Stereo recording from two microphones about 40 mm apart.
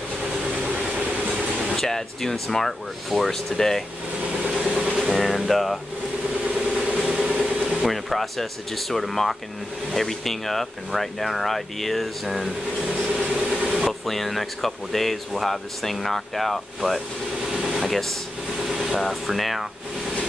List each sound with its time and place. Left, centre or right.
0.2 s vehicle: right
1.8 s speech: centre
4.3 s vehicle: right
4.6 s vehicle: right
4.9 s a sound: centre
6.8 s vehicle: right
7.1 s a sound: centre
7.8 s speech: centre
12.8 s a sound: right
13.7 s speech: centre
17.5 s vehicle: centre
18.6 s speech: centre